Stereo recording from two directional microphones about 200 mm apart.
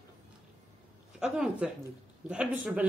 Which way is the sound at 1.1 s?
5° right (ahead or behind).